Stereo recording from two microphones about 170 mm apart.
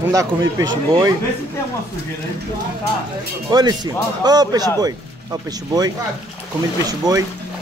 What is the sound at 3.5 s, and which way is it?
Speech, 25° right (ahead or behind).